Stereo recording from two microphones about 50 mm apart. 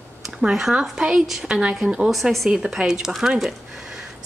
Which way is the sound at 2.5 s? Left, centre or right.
Centre.